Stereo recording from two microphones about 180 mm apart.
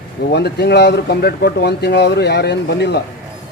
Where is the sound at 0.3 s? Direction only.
65° left (ahead or behind).